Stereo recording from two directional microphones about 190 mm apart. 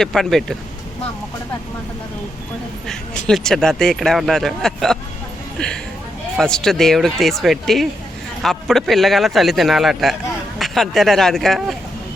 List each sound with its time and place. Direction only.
0.0 s speech: centre (ahead or behind)
2.8 s speech: 5° left (ahead or behind)